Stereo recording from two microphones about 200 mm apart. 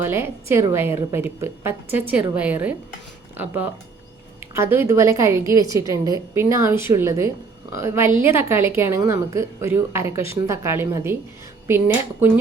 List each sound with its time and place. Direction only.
0.0 s a woman's voice: 10° right (ahead or behind)
12.2 s a woman's voice: 10° right (ahead or behind)